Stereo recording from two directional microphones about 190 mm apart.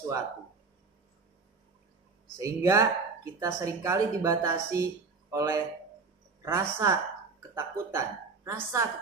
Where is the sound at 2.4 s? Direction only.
15° right (ahead or behind).